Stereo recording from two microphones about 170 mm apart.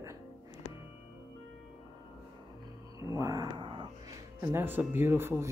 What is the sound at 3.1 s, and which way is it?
Speech, 20° right (ahead or behind).